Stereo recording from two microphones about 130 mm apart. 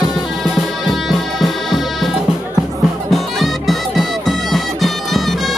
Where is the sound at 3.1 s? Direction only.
Centre (ahead or behind).